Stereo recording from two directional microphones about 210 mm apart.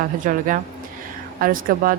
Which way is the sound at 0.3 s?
40° right (ahead or behind).